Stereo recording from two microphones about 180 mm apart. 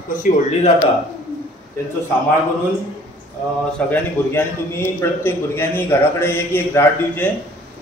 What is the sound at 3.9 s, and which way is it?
A man's voice, 15° left (ahead or behind).